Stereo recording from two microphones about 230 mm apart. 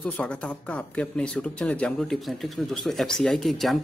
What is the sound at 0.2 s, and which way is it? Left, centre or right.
Speech, centre.